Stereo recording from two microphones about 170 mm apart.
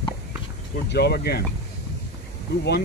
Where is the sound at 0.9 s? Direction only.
70° left (ahead or behind).